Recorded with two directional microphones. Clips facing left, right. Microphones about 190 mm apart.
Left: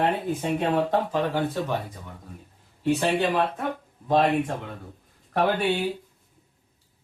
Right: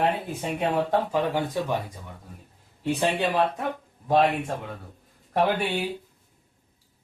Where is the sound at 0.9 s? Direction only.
10° right (ahead or behind).